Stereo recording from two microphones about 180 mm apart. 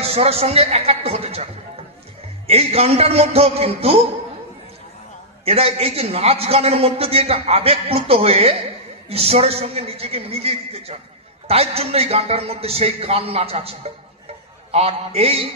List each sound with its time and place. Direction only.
0.0 s a man's voice: 35° right (ahead or behind)
5.4 s a man's voice: 35° right (ahead or behind)